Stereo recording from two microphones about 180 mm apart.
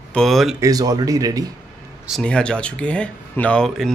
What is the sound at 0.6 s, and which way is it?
Speech, 20° right (ahead or behind).